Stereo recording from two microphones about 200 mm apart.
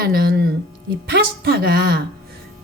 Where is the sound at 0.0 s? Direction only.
50° right (ahead or behind).